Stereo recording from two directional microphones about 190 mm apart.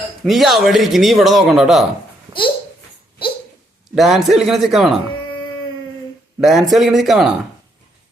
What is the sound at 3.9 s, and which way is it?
A man's voice, centre (ahead or behind).